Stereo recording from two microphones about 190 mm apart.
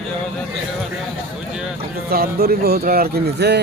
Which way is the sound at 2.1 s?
55° right (ahead or behind).